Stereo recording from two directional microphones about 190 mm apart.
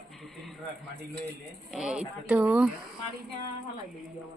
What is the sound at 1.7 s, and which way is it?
Speech, 5° right (ahead or behind).